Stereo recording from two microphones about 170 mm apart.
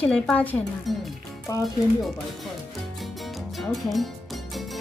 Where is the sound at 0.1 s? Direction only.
5° left (ahead or behind).